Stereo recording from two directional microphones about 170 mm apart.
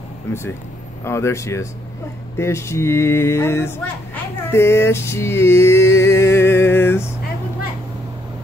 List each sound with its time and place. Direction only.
0.3 s speech: 15° left (ahead or behind)